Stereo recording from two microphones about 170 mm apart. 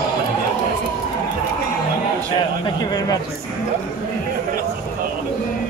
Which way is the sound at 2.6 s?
25° left (ahead or behind).